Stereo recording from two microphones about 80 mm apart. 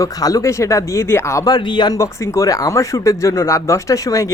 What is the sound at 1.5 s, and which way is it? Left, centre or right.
Speech, left.